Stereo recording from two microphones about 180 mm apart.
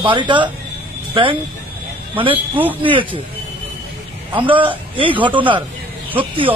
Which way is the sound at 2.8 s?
30° right (ahead or behind).